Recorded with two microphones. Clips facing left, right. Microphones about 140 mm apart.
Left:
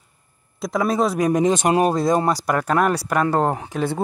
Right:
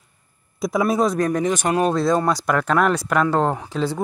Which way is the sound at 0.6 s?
5° right (ahead or behind).